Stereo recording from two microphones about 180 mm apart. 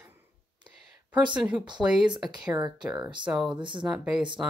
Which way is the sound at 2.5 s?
25° right (ahead or behind).